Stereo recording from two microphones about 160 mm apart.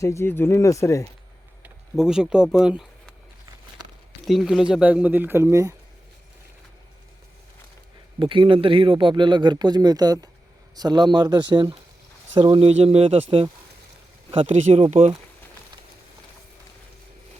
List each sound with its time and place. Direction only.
0.0 s speech: 15° left (ahead or behind)
1.6 s speech: 5° right (ahead or behind)
4.3 s speech: centre (ahead or behind); by 5.7 s 15° right (ahead or behind)
8.2 s speech: 30° right (ahead or behind)